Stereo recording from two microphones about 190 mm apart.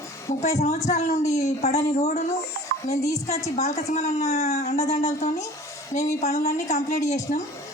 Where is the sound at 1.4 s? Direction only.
35° left (ahead or behind).